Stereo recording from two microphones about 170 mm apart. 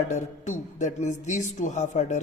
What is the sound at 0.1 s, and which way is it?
A man's voice, 45° left (ahead or behind).